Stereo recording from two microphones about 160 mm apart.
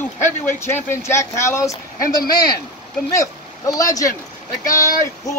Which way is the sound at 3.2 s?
20° left (ahead or behind).